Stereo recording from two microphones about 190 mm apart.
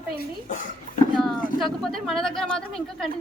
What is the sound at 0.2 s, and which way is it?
Speech, 45° left (ahead or behind).